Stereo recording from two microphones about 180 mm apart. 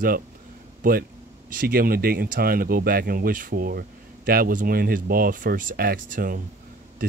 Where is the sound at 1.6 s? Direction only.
55° right (ahead or behind).